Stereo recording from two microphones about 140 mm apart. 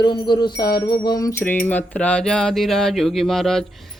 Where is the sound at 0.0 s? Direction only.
35° left (ahead or behind).